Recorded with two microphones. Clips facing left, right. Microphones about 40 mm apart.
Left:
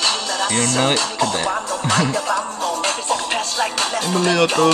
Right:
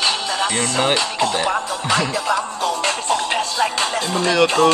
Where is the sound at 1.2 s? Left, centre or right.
Right.